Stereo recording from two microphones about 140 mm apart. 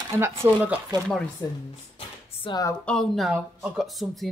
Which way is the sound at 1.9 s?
40° left (ahead or behind).